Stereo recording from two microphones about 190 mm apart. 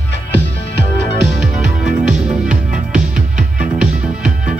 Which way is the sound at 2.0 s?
5° right (ahead or behind).